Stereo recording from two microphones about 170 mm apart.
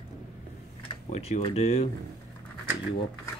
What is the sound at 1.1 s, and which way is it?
Speech, 40° left (ahead or behind).